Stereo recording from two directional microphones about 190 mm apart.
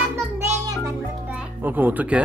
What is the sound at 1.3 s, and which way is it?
Music, 10° right (ahead or behind).